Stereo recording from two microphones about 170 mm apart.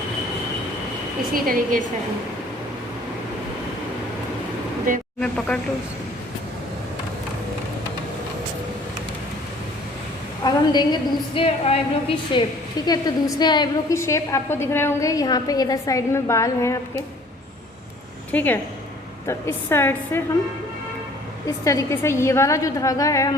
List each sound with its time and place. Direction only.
1.3 s a woman's voice: 55° right (ahead or behind)
4.9 s speech: 55° right (ahead or behind)
5.5 s a woman's voice: 5° left (ahead or behind)
10.4 s a woman's voice: 25° left (ahead or behind)
18.3 s a woman's voice: 10° left (ahead or behind)
21.4 s a woman's voice: 20° left (ahead or behind)